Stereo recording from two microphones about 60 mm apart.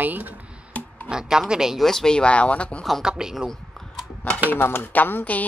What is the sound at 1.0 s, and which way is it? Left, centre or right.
Speech, centre.